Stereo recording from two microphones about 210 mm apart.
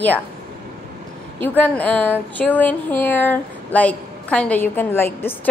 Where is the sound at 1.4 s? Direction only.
10° left (ahead or behind).